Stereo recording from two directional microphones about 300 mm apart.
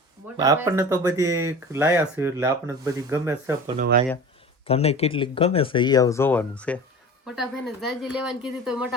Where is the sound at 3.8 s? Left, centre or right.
Right.